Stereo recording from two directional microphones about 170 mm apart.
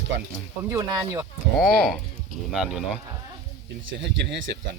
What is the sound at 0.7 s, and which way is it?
Speech, 20° right (ahead or behind).